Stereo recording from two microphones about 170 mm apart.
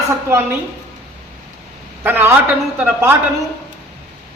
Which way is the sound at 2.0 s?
10° right (ahead or behind).